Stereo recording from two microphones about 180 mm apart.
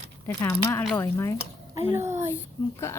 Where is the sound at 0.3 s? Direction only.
15° left (ahead or behind).